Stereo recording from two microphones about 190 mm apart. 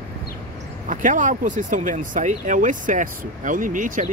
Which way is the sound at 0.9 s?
45° right (ahead or behind).